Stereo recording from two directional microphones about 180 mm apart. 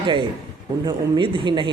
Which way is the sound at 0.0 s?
25° right (ahead or behind).